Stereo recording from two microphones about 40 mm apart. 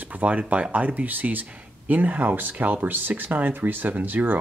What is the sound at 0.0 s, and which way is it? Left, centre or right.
Speech, right.